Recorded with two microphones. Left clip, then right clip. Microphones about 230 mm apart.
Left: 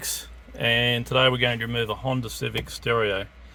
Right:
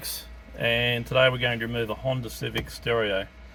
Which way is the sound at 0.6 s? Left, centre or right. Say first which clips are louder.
Left 2 dB; left.